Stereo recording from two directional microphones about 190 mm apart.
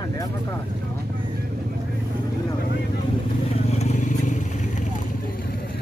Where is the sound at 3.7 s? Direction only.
35° left (ahead or behind).